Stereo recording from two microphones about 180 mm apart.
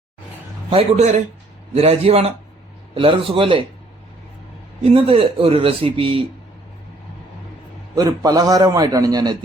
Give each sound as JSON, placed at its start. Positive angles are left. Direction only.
{"t": 0.7, "sound": "a man's voice", "side_deg": -35}
{"t": 4.8, "sound": "a man's voice", "side_deg": -30}
{"t": 7.9, "sound": "a man's voice", "side_deg": -20}